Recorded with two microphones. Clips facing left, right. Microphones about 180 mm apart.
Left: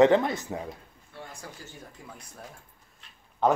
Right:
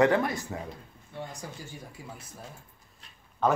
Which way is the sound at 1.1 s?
20° right (ahead or behind).